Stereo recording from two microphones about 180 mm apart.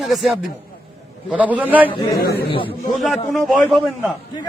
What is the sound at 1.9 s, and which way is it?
A man's voice, 25° left (ahead or behind).